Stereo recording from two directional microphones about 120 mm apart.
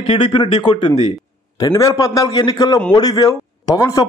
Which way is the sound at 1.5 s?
30° left (ahead or behind).